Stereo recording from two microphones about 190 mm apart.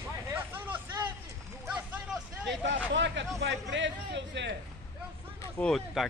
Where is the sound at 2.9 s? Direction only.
70° right (ahead or behind).